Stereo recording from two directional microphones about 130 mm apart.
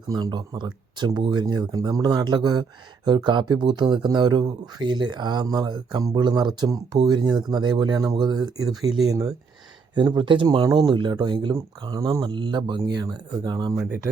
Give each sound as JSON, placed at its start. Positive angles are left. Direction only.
{"t": 0.1, "sound": "speech", "side_deg": -30}